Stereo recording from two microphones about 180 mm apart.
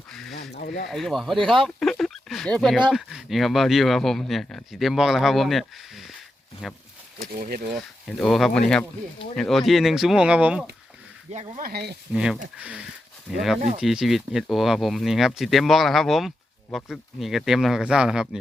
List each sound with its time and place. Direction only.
0.1 s a sound: 5° left (ahead or behind)
0.5 s a sound: 65° left (ahead or behind)
0.9 s speech: centre (ahead or behind)
1.6 s a sound: centre (ahead or behind)
2.9 s speech: centre (ahead or behind)
7.3 s speech: 50° right (ahead or behind)
8.0 s speech: 5° left (ahead or behind)
11.3 s speech: 35° right (ahead or behind)
11.7 s speech: 65° right (ahead or behind)
12.1 s speech: 5° right (ahead or behind)